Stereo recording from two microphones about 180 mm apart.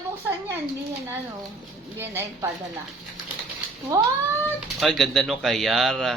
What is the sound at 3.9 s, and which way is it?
Cat, 20° right (ahead or behind).